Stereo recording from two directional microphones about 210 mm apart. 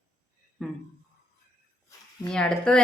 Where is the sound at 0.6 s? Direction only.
Centre (ahead or behind).